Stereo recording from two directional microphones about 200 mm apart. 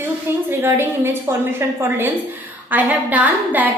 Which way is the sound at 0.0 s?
10° right (ahead or behind).